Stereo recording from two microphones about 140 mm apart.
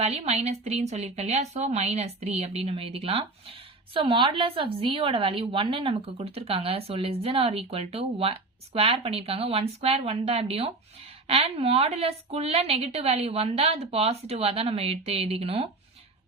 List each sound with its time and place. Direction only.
0.0 s a woman's voice: 50° right (ahead or behind)